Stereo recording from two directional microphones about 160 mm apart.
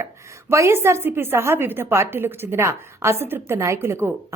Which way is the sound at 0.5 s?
15° right (ahead or behind).